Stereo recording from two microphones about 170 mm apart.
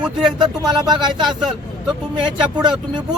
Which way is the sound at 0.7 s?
25° right (ahead or behind).